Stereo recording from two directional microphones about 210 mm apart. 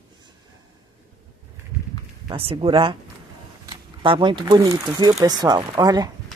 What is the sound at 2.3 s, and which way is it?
Speech, 25° right (ahead or behind).